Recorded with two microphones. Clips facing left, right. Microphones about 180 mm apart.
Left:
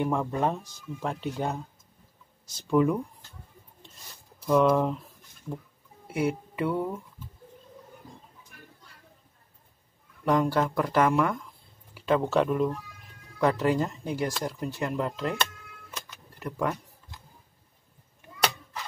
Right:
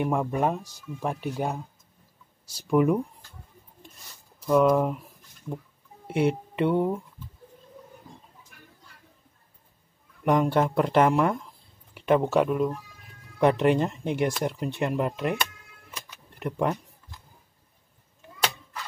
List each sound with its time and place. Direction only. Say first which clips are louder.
0.0 s speech: right 2 dB; 15° right (ahead or behind)
2.7 s speech: right 2 dB; 20° right (ahead or behind)
4.4 s a sound: right 1 dB; 5° right (ahead or behind)
6.0 s speech: right 4 dB; 25° right (ahead or behind)
10.2 s speech: right 2 dB; 20° right (ahead or behind)
12.1 s speech: right 2 dB; 15° right (ahead or behind)
13.4 s speech: right 3 dB; 20° right (ahead or behind)
15.9 s vehicle: even; 10° right (ahead or behind)
16.4 s speech: right 3 dB; 25° right (ahead or behind)